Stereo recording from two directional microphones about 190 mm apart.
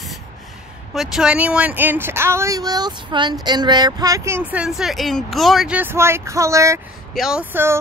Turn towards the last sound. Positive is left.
turn(degrees=-10)  # may be behind; listen again after turning